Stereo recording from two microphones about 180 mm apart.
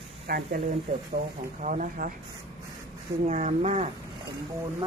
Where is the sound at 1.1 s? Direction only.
45° right (ahead or behind).